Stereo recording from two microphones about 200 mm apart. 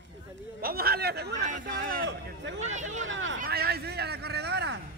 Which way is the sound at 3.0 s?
70° right (ahead or behind).